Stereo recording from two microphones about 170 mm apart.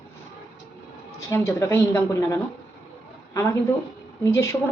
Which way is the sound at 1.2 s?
15° left (ahead or behind).